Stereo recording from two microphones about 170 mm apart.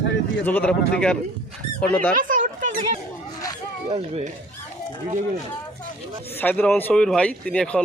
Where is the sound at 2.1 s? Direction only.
50° right (ahead or behind).